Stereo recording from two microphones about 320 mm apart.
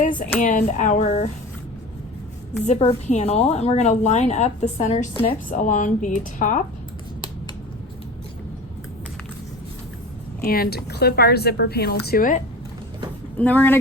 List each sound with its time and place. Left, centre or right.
0.0 s a sound: left
0.4 s a woman's voice: left
2.6 s a woman's voice: centre
10.4 s a woman's voice: left
13.3 s speech: centre